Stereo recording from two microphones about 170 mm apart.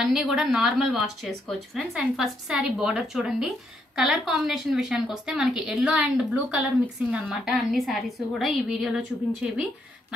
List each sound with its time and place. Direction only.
0.0 s a woman's voice: centre (ahead or behind)